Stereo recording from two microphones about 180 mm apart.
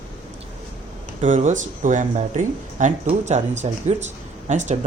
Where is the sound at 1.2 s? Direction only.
45° right (ahead or behind).